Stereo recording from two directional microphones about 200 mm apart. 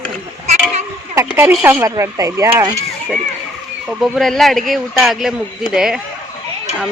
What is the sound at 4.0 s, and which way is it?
Speech, centre (ahead or behind).